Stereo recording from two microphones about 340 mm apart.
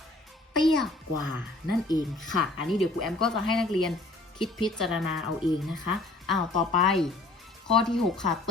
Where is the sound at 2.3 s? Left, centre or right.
Centre.